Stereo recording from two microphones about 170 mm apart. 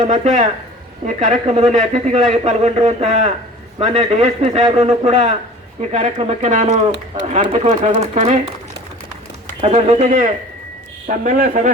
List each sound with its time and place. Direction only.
0.0 s a man's voice: 45° right (ahead or behind)
9.6 s speech: 40° right (ahead or behind)